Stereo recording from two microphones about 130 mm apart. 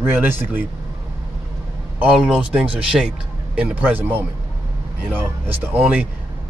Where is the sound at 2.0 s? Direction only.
5° right (ahead or behind).